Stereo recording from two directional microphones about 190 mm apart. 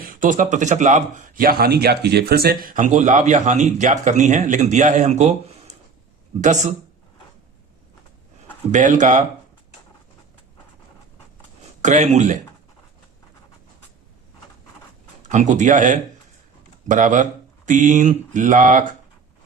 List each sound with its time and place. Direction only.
0.0 s speech: 45° right (ahead or behind)
8.7 s speech: 40° right (ahead or behind)
11.8 s speech: 40° right (ahead or behind)
15.2 s speech: 40° right (ahead or behind)